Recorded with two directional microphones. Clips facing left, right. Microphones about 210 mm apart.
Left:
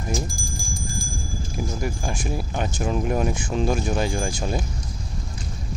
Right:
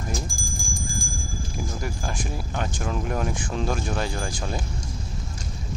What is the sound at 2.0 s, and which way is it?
Speech, 15° left (ahead or behind).